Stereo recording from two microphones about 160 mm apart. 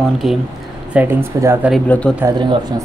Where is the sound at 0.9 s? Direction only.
15° right (ahead or behind).